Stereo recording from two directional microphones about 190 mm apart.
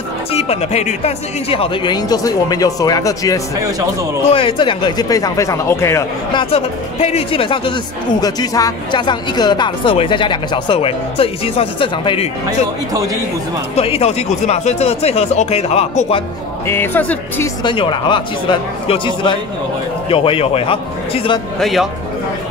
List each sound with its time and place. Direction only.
0.3 s speech: 30° left (ahead or behind); by 6.4 s 15° left (ahead or behind)
6.5 s speech: 30° left (ahead or behind)
13.7 s speech: 30° left (ahead or behind)
16.6 s speech: 10° left (ahead or behind)
17.6 s speech: 25° left (ahead or behind)
21.5 s speech: centre (ahead or behind)